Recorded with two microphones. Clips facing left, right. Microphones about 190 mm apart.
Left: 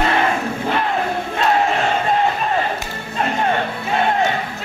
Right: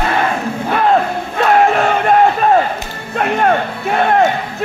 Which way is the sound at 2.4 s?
55° right (ahead or behind).